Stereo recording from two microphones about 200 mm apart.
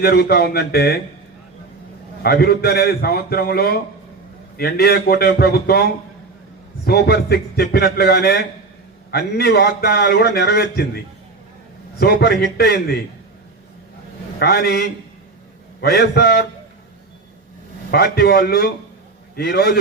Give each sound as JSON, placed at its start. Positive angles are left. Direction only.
{"t": 0.0, "sound": "a man's voice", "side_deg": 55}
{"t": 2.2, "sound": "a man's voice", "side_deg": 50}
{"t": 11.9, "sound": "a man's voice", "side_deg": 50}
{"t": 14.3, "sound": "a man's voice", "side_deg": 50}
{"t": 17.9, "sound": "a man's voice", "side_deg": 50}